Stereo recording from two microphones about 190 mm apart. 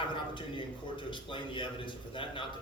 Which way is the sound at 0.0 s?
25° left (ahead or behind).